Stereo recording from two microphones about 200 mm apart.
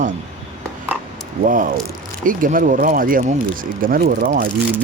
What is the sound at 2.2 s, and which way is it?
Speech, 45° right (ahead or behind).